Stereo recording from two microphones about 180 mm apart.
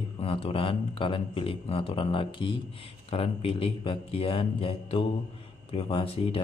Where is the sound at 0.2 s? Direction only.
30° left (ahead or behind).